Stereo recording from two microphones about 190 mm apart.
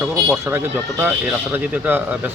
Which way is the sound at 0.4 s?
10° right (ahead or behind).